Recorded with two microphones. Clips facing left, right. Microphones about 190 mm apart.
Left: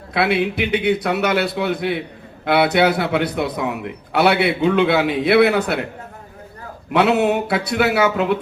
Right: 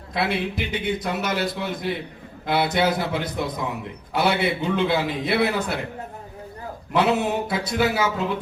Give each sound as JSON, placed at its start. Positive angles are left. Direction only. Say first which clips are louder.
{"t": 0.1, "sound": "a man's voice", "louder": "left 6 dB", "side_deg": 65}
{"t": 6.9, "sound": "a man's voice", "louder": "left 5 dB", "side_deg": 65}